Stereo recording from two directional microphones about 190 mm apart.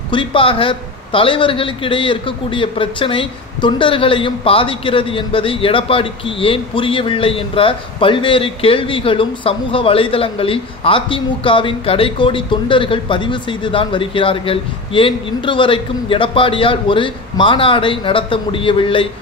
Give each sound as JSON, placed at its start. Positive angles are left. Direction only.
{"t": 0.1, "sound": "a man's voice", "side_deg": 25}